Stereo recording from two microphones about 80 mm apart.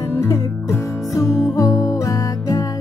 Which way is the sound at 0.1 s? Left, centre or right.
Left.